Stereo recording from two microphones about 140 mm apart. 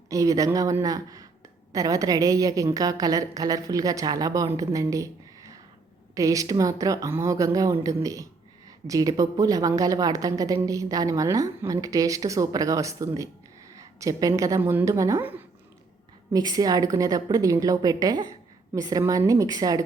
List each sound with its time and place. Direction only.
0.1 s speech: 25° right (ahead or behind)